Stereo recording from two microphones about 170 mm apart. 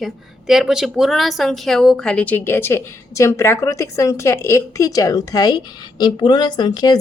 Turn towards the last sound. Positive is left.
turn(degrees=20)  # may be behind; listen again after turning